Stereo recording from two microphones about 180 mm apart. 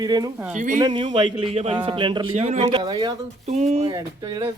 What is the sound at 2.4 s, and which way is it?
Speech, 40° right (ahead or behind).